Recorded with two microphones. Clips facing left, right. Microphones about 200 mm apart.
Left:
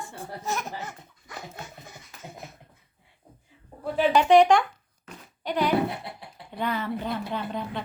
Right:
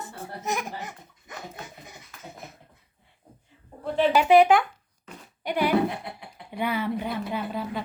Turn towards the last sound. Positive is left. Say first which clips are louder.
# right 1 dB
turn(degrees=-5)  # may be behind; listen again after turning